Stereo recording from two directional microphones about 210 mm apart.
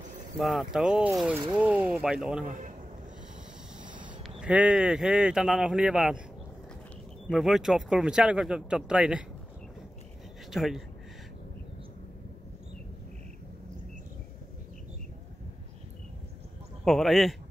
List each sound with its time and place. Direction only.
0.4 s speech: centre (ahead or behind)
2.4 s a man's voice: 40° right (ahead or behind)
4.4 s speech: 5° right (ahead or behind)
7.2 s speech: centre (ahead or behind)
10.5 s speech: centre (ahead or behind)
16.8 s speech: centre (ahead or behind)